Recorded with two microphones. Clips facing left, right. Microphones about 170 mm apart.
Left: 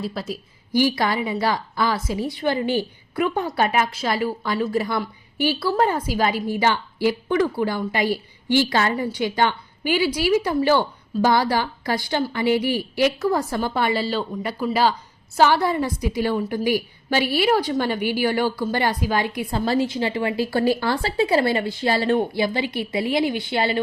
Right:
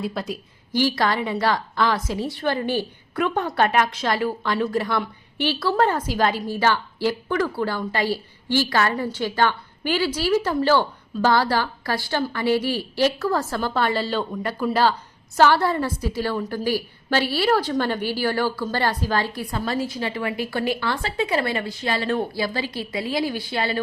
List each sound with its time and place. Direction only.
0.0 s speech: centre (ahead or behind)
0.8 s a woman's voice: 15° left (ahead or behind); by 22.1 s 35° left (ahead or behind)
22.3 s a woman's voice: 20° left (ahead or behind)